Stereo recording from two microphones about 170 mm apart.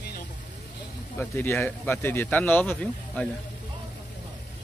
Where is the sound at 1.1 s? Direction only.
15° left (ahead or behind).